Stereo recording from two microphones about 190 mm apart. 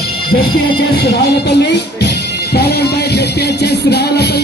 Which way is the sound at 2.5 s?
55° left (ahead or behind).